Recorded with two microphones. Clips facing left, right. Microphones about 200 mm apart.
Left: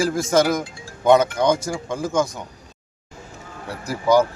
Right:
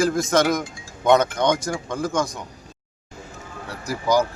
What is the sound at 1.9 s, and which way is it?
Speech, 25° left (ahead or behind).